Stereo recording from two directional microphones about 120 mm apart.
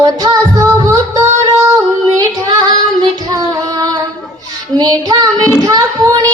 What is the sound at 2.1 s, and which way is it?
Female singing, 30° right (ahead or behind).